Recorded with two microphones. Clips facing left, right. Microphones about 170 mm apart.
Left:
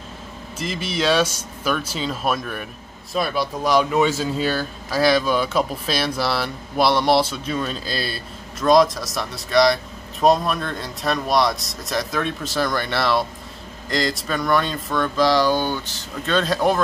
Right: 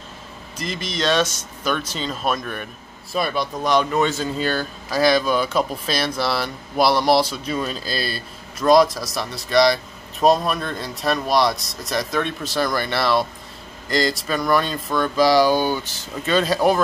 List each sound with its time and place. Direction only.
0.6 s speech: 5° left (ahead or behind)